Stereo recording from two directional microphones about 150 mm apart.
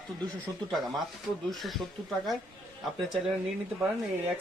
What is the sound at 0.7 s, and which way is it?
Speech, centre (ahead or behind).